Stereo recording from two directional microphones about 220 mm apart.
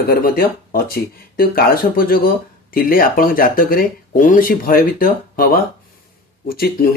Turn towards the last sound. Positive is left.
turn(degrees=45)  # may be behind; listen again after turning